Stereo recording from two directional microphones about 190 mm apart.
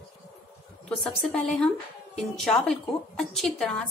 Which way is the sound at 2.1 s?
Centre (ahead or behind).